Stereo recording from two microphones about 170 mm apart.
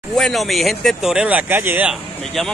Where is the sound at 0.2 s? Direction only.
Centre (ahead or behind).